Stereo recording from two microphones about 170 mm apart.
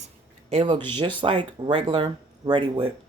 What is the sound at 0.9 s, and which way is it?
Speech, 30° right (ahead or behind).